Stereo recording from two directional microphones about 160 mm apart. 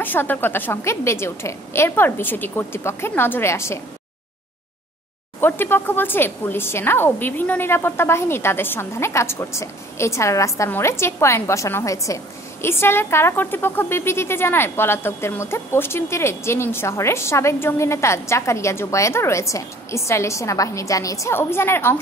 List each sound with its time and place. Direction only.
0.0 s speech: 10° left (ahead or behind)
5.4 s speech: 15° left (ahead or behind)